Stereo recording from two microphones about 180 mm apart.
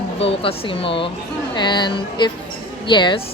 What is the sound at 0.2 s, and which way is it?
A woman's voice, 30° left (ahead or behind).